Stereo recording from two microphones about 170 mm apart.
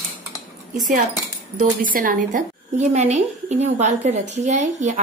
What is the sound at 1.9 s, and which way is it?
A woman's voice, 55° right (ahead or behind).